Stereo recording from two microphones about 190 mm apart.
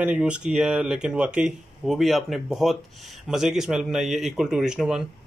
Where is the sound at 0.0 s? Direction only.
5° right (ahead or behind).